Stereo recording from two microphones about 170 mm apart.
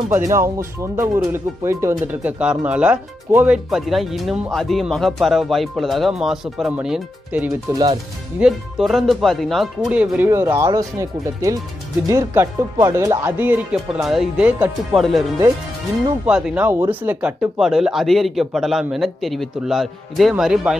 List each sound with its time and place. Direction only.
0.3 s speech: 15° right (ahead or behind)
7.7 s speech: 25° right (ahead or behind)
8.4 s speech: 5° right (ahead or behind)
16.3 s speech: 5° right (ahead or behind)